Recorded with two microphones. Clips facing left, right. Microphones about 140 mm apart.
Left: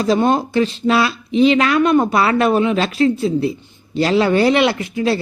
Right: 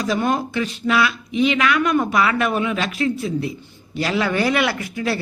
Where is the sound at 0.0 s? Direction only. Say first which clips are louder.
Left 5 dB; 30° left (ahead or behind).